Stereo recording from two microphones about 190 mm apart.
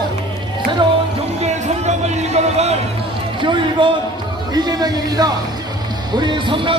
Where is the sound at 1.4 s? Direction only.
35° right (ahead or behind).